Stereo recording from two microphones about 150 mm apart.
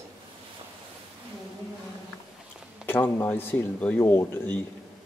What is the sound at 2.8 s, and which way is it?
Speech, 15° left (ahead or behind).